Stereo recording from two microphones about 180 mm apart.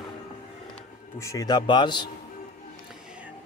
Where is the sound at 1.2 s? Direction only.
15° left (ahead or behind).